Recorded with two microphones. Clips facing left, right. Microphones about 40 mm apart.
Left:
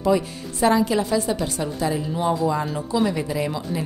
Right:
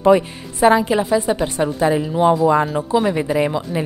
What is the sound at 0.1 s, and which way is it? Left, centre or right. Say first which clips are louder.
A woman's voice: right 5 dB; right.